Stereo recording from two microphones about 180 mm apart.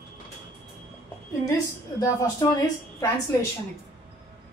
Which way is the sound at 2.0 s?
20° left (ahead or behind).